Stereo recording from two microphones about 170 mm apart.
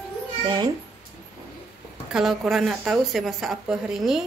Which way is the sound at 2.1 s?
Centre (ahead or behind).